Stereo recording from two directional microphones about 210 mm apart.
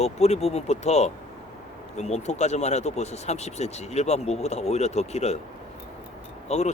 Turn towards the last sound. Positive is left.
turn(degrees=30)  # may be behind; listen again after turning